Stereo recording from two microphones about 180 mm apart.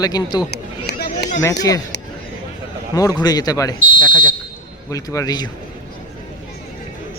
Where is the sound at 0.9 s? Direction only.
65° left (ahead or behind).